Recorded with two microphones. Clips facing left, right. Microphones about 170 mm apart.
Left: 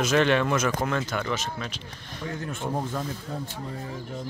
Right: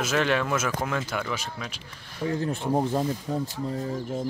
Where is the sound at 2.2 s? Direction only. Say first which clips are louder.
Right 5 dB; 35° right (ahead or behind).